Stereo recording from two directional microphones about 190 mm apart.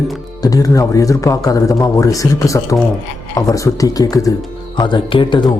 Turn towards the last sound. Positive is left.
turn(degrees=25)  # may be behind; listen again after turning